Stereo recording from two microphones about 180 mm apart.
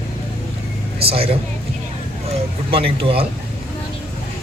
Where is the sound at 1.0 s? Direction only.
35° right (ahead or behind).